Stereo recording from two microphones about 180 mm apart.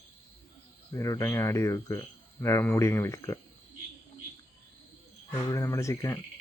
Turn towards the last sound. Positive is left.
turn(degrees=15)  # may be behind; listen again after turning